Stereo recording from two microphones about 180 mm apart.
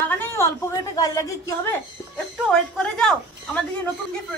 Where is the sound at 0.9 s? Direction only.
20° left (ahead or behind).